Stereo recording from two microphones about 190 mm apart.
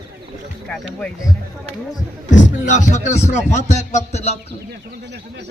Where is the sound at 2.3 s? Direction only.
40° left (ahead or behind).